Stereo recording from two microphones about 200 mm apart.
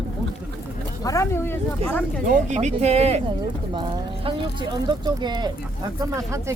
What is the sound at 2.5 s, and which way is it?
Speech, 35° right (ahead or behind).